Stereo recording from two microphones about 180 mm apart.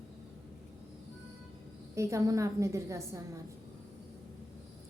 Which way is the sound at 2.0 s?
15° right (ahead or behind).